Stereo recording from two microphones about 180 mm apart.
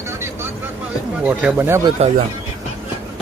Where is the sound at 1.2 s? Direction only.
5° right (ahead or behind).